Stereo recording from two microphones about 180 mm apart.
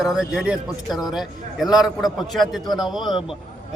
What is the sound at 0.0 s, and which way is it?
A man's voice, centre (ahead or behind).